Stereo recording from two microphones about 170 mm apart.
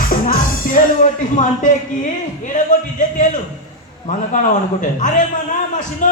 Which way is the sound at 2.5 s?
50° left (ahead or behind).